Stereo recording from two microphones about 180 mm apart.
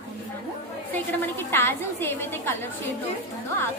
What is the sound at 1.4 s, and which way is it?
A woman's voice, 10° left (ahead or behind).